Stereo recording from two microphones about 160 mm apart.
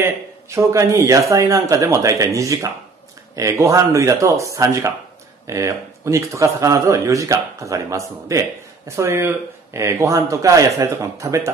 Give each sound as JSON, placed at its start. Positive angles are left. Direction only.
{"t": 0.0, "sound": "speech", "side_deg": -15}